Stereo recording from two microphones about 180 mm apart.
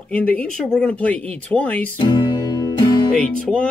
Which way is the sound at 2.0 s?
25° left (ahead or behind).